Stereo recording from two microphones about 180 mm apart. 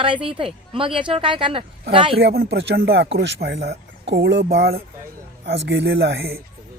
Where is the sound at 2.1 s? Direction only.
60° right (ahead or behind).